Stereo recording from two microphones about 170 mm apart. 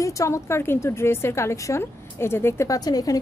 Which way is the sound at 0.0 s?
20° left (ahead or behind).